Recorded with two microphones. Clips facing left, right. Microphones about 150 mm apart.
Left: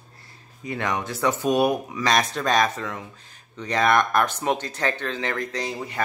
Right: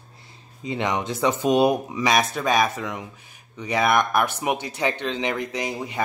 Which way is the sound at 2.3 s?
5° right (ahead or behind).